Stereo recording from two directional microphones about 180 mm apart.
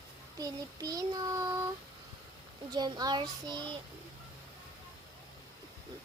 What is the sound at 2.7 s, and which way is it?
Child singing, 20° right (ahead or behind).